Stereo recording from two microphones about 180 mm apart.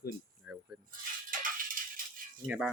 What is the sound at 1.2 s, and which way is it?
Music, 50° right (ahead or behind).